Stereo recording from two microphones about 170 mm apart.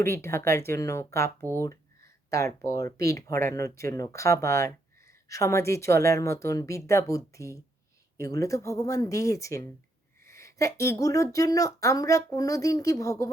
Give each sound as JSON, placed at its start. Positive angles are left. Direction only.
{"t": 0.0, "sound": "speech", "side_deg": 15}